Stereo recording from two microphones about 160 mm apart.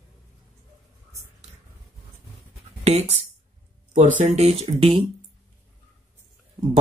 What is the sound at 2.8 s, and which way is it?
Speech, 40° right (ahead or behind).